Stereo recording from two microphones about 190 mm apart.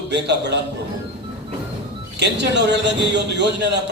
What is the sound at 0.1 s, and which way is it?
Speech, 65° right (ahead or behind).